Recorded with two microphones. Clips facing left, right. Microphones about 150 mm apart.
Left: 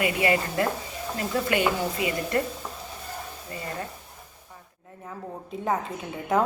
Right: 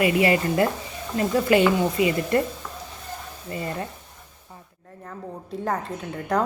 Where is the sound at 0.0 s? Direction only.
25° right (ahead or behind).